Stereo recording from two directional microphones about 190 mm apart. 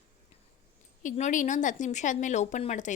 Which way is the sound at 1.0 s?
40° left (ahead or behind).